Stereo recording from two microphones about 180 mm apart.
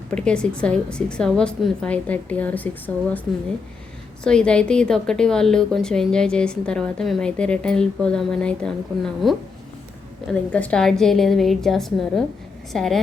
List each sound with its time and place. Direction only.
0.1 s a woman's voice: 5° left (ahead or behind)
4.2 s a woman's voice: 5° left (ahead or behind)
10.5 s a woman's voice: 5° left (ahead or behind)